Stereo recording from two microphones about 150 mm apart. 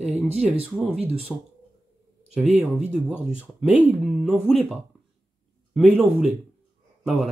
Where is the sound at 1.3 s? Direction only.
Centre (ahead or behind).